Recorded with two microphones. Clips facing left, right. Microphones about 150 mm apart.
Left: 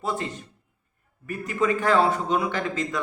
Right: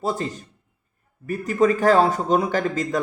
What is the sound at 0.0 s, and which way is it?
Speech, 35° right (ahead or behind).